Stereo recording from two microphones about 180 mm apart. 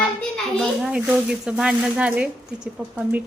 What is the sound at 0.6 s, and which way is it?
A woman's voice, 5° right (ahead or behind).